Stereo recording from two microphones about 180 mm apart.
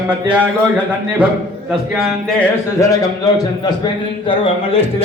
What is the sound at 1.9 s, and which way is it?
Speech, 5° left (ahead or behind).